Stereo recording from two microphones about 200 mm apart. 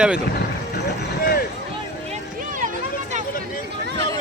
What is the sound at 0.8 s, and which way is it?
Vehicle, 50° left (ahead or behind).